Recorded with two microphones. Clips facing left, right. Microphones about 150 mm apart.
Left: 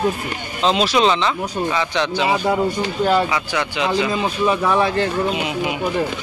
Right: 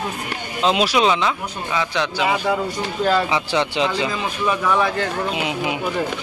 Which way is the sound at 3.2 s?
25° right (ahead or behind).